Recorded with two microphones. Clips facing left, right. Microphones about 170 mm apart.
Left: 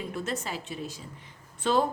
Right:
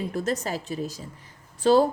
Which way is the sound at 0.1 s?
40° right (ahead or behind).